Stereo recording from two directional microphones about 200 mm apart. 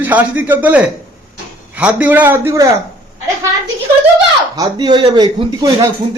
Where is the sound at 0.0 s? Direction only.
10° right (ahead or behind).